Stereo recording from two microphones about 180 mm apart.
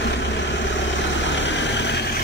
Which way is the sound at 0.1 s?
90° left.